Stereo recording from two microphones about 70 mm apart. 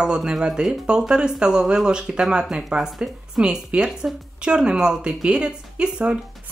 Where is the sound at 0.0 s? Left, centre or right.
Centre.